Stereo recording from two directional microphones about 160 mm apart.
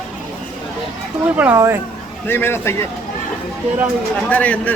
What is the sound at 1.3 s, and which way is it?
Speech, 10° right (ahead or behind).